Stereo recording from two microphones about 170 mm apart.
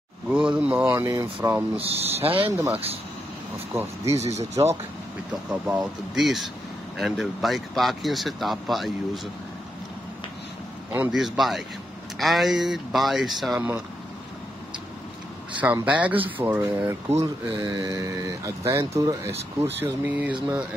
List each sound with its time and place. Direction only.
0.3 s speech: 5° right (ahead or behind)
1.8 s speech: 35° right (ahead or behind)
2.5 s speech: 15° right (ahead or behind)
4.2 s speech: 40° right (ahead or behind)
5.5 s speech: 5° right (ahead or behind)
10.9 s speech: 5° right (ahead or behind)
15.6 s speech: 10° right (ahead or behind)